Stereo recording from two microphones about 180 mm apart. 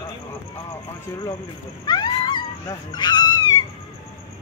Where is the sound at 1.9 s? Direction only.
25° left (ahead or behind).